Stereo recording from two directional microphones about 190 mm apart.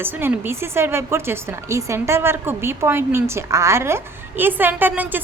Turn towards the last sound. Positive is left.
turn(degrees=-10)  # may be behind; listen again after turning